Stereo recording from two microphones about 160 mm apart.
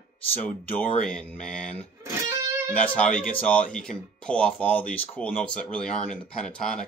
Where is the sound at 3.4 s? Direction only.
10° left (ahead or behind).